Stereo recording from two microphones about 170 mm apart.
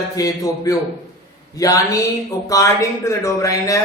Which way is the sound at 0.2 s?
20° left (ahead or behind).